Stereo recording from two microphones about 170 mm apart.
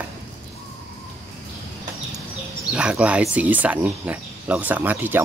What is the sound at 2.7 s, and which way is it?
Speech, 5° right (ahead or behind).